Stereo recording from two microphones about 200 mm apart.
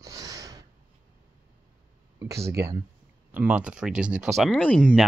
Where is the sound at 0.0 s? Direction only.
15° right (ahead or behind).